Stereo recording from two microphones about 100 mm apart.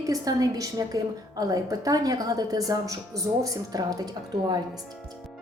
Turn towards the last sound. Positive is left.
turn(degrees=-45)  # may be behind; listen again after turning